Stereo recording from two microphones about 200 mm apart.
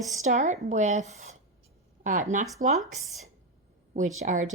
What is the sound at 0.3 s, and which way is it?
A woman's voice, 35° right (ahead or behind).